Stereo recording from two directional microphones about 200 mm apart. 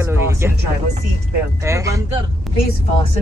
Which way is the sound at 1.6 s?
15° right (ahead or behind).